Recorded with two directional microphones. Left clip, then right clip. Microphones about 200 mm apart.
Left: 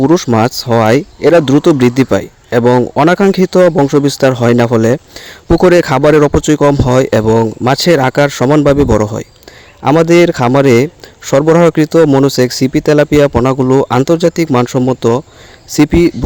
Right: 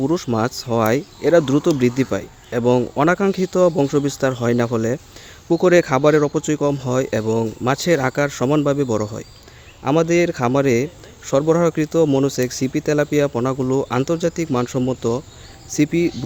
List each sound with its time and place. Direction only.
0.0 s speech: 40° left (ahead or behind)